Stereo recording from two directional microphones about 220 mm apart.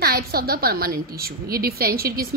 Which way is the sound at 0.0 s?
45° right (ahead or behind).